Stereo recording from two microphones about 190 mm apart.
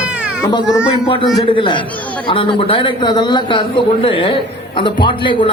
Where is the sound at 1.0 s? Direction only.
25° left (ahead or behind).